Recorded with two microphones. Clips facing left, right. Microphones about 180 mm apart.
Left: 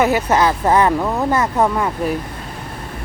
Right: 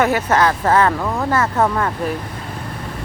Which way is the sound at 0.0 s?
10° left (ahead or behind).